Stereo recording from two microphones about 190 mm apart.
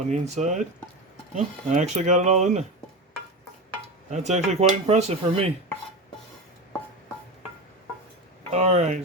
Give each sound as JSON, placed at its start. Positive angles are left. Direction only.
{"t": 0.1, "sound": "speech", "side_deg": -40}
{"t": 4.1, "sound": "speech", "side_deg": -35}
{"t": 8.5, "sound": "speech", "side_deg": -35}